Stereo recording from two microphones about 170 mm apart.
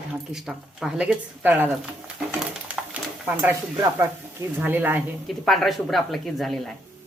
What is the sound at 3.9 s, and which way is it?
Speech, 15° right (ahead or behind).